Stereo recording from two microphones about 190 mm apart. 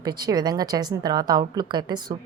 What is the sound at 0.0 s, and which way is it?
A woman's voice, 20° right (ahead or behind).